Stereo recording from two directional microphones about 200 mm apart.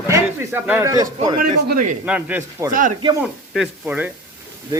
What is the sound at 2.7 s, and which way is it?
Speech, 40° right (ahead or behind).